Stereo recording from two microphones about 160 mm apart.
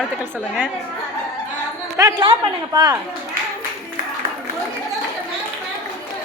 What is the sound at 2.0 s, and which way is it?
Speech, 25° right (ahead or behind).